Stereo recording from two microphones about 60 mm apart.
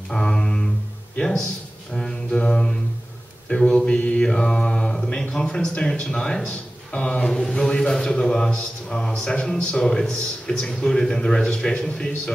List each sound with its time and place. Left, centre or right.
0.1 s a sound: centre
1.1 s speech: centre
2.0 s mantra: centre
5.3 s a man's voice: centre